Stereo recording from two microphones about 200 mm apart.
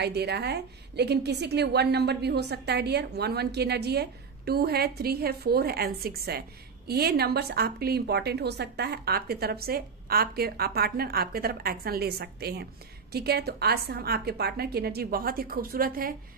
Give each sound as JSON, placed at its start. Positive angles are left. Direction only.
{"t": 0.0, "sound": "a woman's voice", "side_deg": -55}